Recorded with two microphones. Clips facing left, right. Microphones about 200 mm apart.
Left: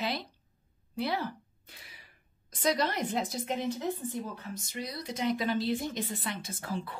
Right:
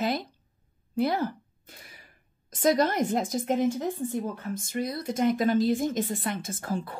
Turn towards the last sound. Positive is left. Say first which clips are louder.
# right 5 dB
turn(degrees=-45)  # may be behind; listen again after turning